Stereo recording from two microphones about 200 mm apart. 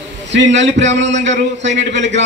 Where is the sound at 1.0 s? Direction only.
65° right (ahead or behind).